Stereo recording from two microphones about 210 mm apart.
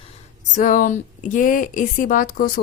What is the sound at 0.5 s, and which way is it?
A woman's voice, 35° left (ahead or behind).